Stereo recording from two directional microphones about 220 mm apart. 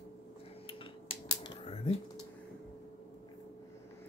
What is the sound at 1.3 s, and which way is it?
Typewriter, 25° left (ahead or behind).